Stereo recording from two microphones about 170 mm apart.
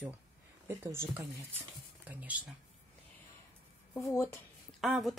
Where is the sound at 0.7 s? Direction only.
15° right (ahead or behind).